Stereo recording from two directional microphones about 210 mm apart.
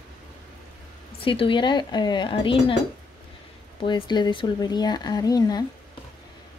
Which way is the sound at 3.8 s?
20° left (ahead or behind).